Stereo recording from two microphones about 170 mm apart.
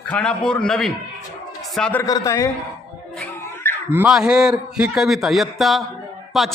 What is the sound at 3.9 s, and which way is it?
A man's voice, 5° right (ahead or behind).